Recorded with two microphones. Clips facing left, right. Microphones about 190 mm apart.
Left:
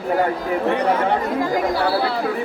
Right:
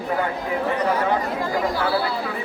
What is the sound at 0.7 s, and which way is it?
Speech, 65° left (ahead or behind).